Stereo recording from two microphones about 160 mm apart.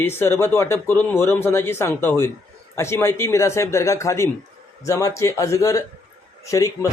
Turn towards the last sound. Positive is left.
turn(degrees=20)  # may be behind; listen again after turning